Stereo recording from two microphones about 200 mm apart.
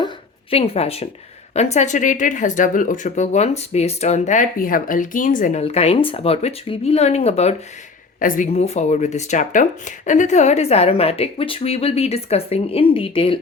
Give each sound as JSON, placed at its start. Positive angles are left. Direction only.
{"t": 0.5, "sound": "speech", "side_deg": 30}